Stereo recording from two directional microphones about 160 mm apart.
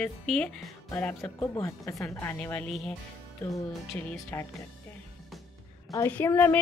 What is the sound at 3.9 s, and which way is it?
Speech, 10° left (ahead or behind).